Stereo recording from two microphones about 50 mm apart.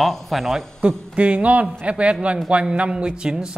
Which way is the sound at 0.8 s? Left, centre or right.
Right.